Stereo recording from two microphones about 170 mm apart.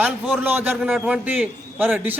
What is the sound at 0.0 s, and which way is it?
A man's voice, 10° right (ahead or behind).